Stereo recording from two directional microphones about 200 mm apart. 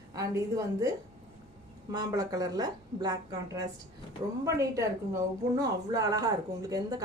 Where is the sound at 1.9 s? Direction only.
20° right (ahead or behind).